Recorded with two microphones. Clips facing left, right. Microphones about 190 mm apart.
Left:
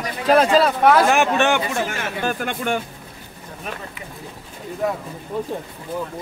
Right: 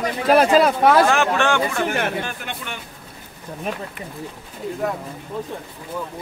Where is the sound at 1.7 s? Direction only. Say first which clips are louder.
Right 3 dB; 60° right (ahead or behind).